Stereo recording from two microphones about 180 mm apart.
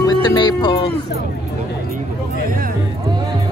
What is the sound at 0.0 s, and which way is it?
Speech, 20° left (ahead or behind).